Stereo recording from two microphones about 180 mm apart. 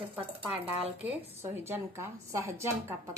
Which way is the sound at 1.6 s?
15° right (ahead or behind).